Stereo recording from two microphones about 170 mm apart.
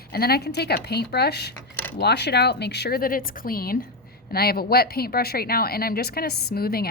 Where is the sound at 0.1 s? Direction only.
65° left (ahead or behind).